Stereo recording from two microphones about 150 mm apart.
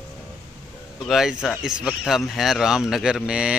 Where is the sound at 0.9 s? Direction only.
Centre (ahead or behind).